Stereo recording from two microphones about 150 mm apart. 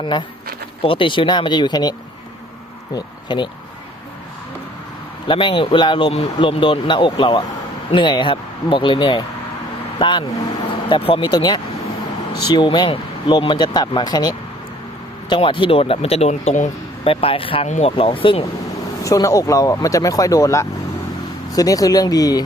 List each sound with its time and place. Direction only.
0.0 s a man's voice: 30° left (ahead or behind)
5.3 s a man's voice: 35° left (ahead or behind)
19.0 s speech: 20° left (ahead or behind)